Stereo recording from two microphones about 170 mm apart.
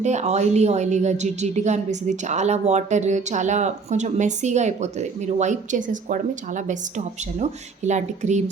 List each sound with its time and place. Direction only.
0.0 s a woman's voice: 40° right (ahead or behind)